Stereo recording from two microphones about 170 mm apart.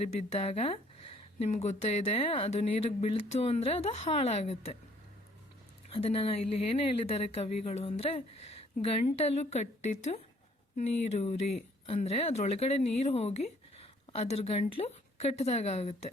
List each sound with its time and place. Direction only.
0.0 s speech: 35° left (ahead or behind)
5.9 s speech: 35° left (ahead or behind)